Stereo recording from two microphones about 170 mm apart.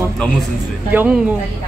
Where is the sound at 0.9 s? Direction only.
10° right (ahead or behind).